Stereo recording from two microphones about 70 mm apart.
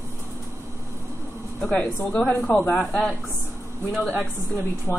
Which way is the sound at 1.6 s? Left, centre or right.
Centre.